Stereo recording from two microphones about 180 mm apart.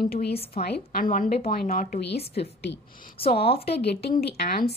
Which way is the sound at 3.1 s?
30° left (ahead or behind).